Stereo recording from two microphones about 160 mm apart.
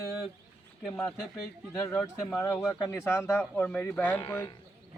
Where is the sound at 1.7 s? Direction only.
15° left (ahead or behind).